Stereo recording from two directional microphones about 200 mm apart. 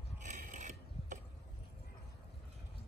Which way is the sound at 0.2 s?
40° right (ahead or behind).